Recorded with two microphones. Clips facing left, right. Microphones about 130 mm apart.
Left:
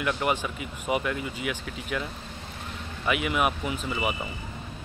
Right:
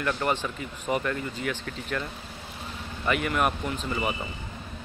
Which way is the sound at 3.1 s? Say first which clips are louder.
Even; 5° left (ahead or behind).